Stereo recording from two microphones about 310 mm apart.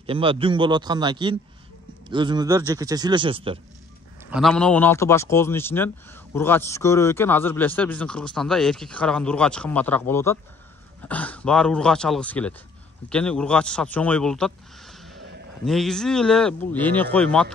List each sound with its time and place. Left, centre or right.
0.0 s speech: centre
4.3 s speech: centre